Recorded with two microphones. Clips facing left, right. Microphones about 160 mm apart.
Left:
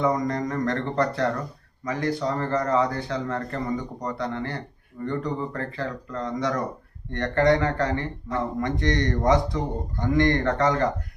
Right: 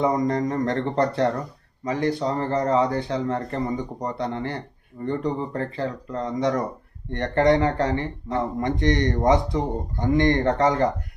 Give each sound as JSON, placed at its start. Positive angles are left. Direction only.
{"t": 0.0, "sound": "speech", "side_deg": -25}